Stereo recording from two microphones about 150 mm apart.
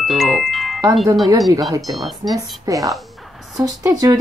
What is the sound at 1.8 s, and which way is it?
Speech, centre (ahead or behind).